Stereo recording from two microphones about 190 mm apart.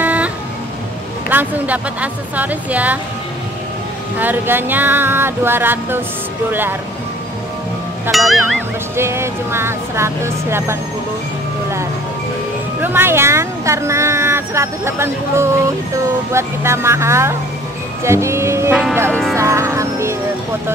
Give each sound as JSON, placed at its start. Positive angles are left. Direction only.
{"t": 0.0, "sound": "vehicle", "side_deg": -10}
{"t": 1.3, "sound": "speech", "side_deg": -10}
{"t": 4.2, "sound": "speech", "side_deg": -10}
{"t": 8.1, "sound": "speech", "side_deg": 0}
{"t": 8.9, "sound": "speech", "side_deg": -15}
{"t": 12.8, "sound": "speech", "side_deg": -10}
{"t": 19.3, "sound": "music", "side_deg": -15}